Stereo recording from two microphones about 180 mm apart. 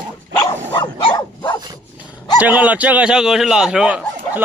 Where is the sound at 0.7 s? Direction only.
25° left (ahead or behind).